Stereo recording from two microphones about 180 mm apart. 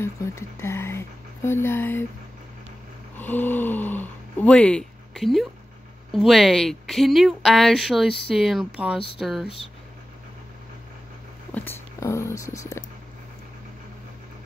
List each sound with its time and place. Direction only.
0.0 s speech: 15° left (ahead or behind)
3.2 s speech: 10° left (ahead or behind)
11.5 s speech: 10° left (ahead or behind)